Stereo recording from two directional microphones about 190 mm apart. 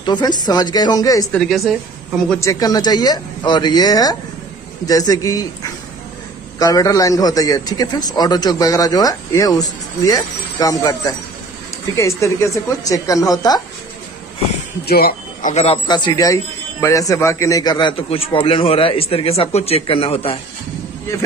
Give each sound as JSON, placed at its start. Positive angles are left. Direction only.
{"t": 0.0, "sound": "a man's voice", "side_deg": 20}
{"t": 1.3, "sound": "a woman's voice", "side_deg": 0}
{"t": 2.4, "sound": "a man's voice", "side_deg": 20}
{"t": 14.9, "sound": "speech", "side_deg": 55}
{"t": 15.5, "sound": "a man's voice", "side_deg": 35}
{"t": 15.9, "sound": "a man's voice", "side_deg": 20}